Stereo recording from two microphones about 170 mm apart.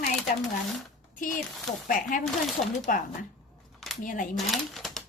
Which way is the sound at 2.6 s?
45° left (ahead or behind).